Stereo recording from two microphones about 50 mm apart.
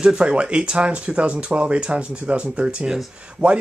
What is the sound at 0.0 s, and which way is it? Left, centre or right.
Speech, centre.